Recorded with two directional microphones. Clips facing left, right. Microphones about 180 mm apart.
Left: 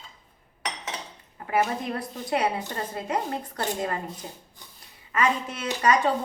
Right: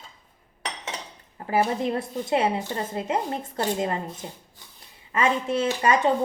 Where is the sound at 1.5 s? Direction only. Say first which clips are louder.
Right 3 dB; 30° right (ahead or behind).